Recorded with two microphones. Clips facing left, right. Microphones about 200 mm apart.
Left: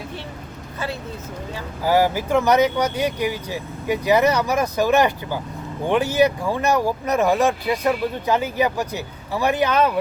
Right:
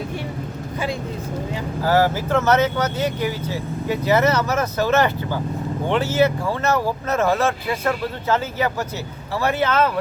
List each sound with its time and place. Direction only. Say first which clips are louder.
1.8 s speech: even; 15° left (ahead or behind)